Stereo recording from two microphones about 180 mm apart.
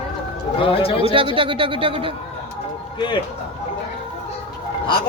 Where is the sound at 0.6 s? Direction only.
30° left (ahead or behind).